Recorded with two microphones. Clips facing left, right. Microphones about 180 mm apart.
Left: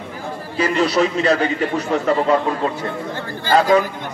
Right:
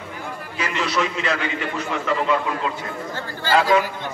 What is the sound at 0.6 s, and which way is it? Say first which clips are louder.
A man's voice: left 7 dB; 35° left (ahead or behind).